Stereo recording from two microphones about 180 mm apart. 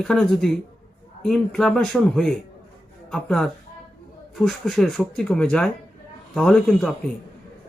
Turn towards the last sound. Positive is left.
turn(degrees=5)  # may be behind; listen again after turning